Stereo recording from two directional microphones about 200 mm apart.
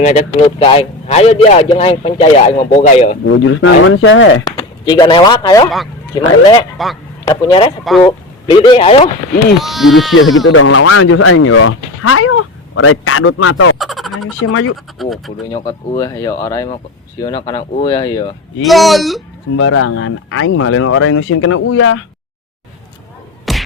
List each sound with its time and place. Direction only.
0.0 s a man's voice: 35° left (ahead or behind)
3.4 s speech: 85° left
4.5 s speech: 20° left (ahead or behind)
9.6 s speech: centre (ahead or behind)
10.5 s speech: 75° left (ahead or behind); by 13.7 s 90° left
13.7 s speech: centre (ahead or behind)
14.2 s speech: 90° left
15.0 s speech: centre (ahead or behind)
15.5 s speech: 20° left (ahead or behind)
18.6 s speech: centre (ahead or behind)
19.5 s speech: 90° left
23.5 s music: centre (ahead or behind)